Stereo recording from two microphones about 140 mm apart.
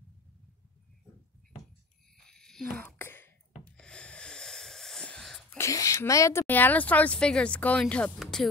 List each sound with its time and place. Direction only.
2.1 s whispering: 5° left (ahead or behind)
3.0 s throat clearing: 15° left (ahead or behind)
3.7 s wheeze: 5° left (ahead or behind)
5.6 s speech: 25° left (ahead or behind); by 8.5 s 5° left (ahead or behind)